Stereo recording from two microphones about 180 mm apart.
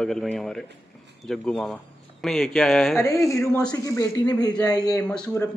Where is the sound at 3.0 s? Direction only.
15° left (ahead or behind).